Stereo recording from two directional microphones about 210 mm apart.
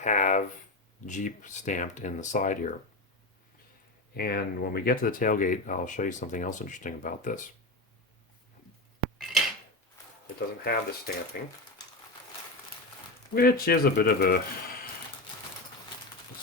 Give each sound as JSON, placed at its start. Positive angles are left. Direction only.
{"t": 0.0, "sound": "a sound", "side_deg": 35}
{"t": 1.0, "sound": "speech", "side_deg": 35}
{"t": 4.1, "sound": "speech", "side_deg": 45}
{"t": 9.1, "sound": "dishes", "side_deg": 0}
{"t": 10.6, "sound": "speech", "side_deg": 45}
{"t": 13.3, "sound": "speech", "side_deg": 45}